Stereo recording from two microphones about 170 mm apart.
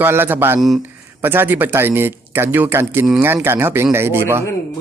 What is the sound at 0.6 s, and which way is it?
Speech, centre (ahead or behind).